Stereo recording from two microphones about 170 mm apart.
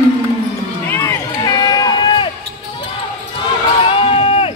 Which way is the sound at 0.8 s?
15° left (ahead or behind).